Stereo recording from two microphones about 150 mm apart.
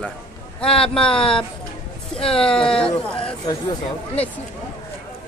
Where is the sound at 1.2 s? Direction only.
5° left (ahead or behind).